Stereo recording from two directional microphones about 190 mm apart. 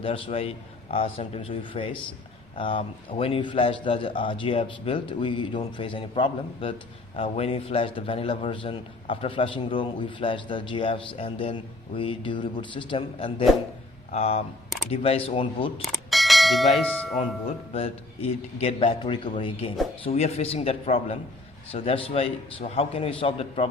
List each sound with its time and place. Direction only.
0.0 s a man's voice: 30° left (ahead or behind)
15.8 s bell: centre (ahead or behind)
17.2 s a man's voice: 30° left (ahead or behind)